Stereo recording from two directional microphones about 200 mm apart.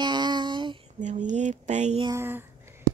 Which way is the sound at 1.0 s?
35° right (ahead or behind).